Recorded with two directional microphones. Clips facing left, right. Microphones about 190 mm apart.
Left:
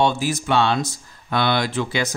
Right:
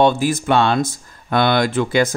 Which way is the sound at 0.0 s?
55° right (ahead or behind).